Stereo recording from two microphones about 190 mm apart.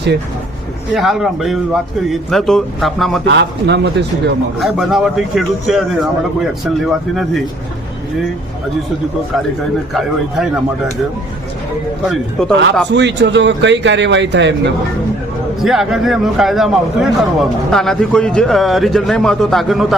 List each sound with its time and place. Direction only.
0.9 s a man's voice: centre (ahead or behind)
3.2 s speech: 65° right (ahead or behind)
4.6 s a man's voice: centre (ahead or behind)
9.9 s a man's voice: centre (ahead or behind)
12.0 s a man's voice: 5° left (ahead or behind)
12.9 s speech: 70° right (ahead or behind)
15.6 s a man's voice: centre (ahead or behind)